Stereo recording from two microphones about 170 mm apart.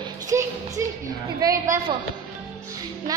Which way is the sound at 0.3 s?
20° right (ahead or behind).